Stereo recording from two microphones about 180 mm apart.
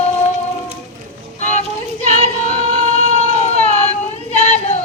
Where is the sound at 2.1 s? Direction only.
40° left (ahead or behind).